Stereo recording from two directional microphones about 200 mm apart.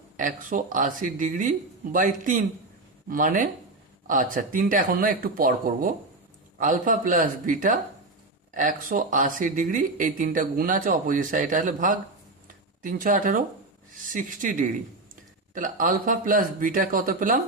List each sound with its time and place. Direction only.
0.2 s speech: 40° right (ahead or behind)